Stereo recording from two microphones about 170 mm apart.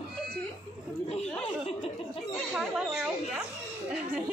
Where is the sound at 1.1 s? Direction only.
35° left (ahead or behind).